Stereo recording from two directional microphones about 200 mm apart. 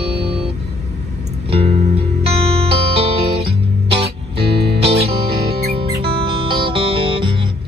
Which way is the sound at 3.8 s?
30° right (ahead or behind).